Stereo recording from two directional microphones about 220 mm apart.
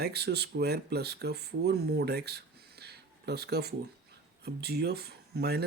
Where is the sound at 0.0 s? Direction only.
50° right (ahead or behind).